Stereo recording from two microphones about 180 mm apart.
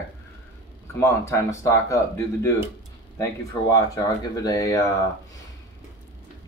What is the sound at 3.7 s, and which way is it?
Speech, 20° left (ahead or behind).